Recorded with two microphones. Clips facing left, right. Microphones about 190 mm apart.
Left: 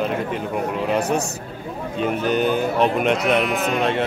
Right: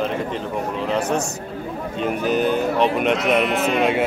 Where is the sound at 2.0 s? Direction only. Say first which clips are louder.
Even; centre (ahead or behind).